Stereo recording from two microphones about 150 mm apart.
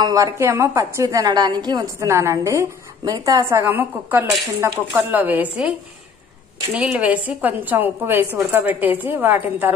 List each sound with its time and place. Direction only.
0.0 s a woman's voice: 20° right (ahead or behind)